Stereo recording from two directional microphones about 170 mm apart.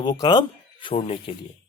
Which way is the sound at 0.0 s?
25° left (ahead or behind).